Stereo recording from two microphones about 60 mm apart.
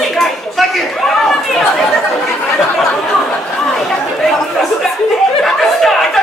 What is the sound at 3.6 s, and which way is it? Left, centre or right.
Chatter, centre.